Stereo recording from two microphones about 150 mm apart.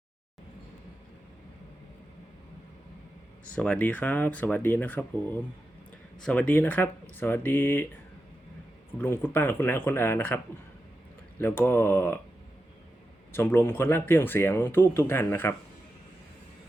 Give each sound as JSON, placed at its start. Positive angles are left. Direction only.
{"t": 3.5, "sound": "speech", "side_deg": 10}
{"t": 9.0, "sound": "speech", "side_deg": 15}
{"t": 13.3, "sound": "speech", "side_deg": 15}